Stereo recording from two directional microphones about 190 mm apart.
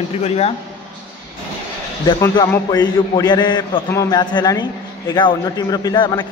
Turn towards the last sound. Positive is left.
turn(degrees=20)  # may be behind; listen again after turning